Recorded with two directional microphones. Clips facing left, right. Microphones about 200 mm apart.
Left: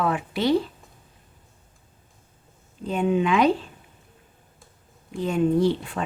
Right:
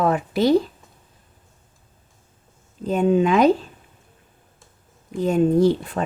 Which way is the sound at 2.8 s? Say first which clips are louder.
Right 4 dB; 40° right (ahead or behind).